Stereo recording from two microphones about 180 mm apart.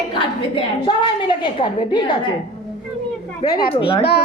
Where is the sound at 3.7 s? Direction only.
30° left (ahead or behind).